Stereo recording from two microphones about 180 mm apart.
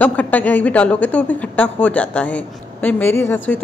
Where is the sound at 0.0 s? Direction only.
10° left (ahead or behind).